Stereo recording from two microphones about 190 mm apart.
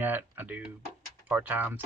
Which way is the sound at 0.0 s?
10° right (ahead or behind).